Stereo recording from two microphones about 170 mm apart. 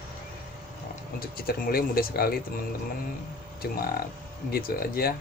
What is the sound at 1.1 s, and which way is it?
Speech, 60° left (ahead or behind).